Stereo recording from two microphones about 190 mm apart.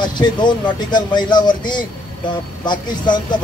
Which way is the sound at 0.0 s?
25° left (ahead or behind).